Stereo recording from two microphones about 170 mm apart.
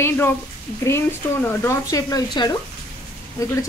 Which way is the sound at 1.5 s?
15° left (ahead or behind).